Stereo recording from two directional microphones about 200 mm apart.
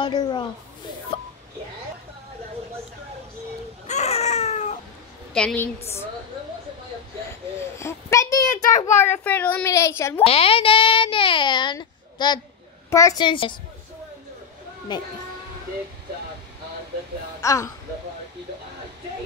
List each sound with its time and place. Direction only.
0.0 s a child's voice: 20° left (ahead or behind)
1.1 s a sound: 30° left (ahead or behind)
3.8 s baby cry: 35° left (ahead or behind)
5.3 s a woman's voice: 5° left (ahead or behind)
7.8 s a child's voice: 15° left (ahead or behind)
8.7 s a child's voice: 35° left (ahead or behind)
9.0 s a woman's voice: 10° left (ahead or behind)
10.2 s a child's voice: 30° left (ahead or behind)
14.9 s a child's voice: 20° left (ahead or behind)
17.4 s speech: 15° left (ahead or behind)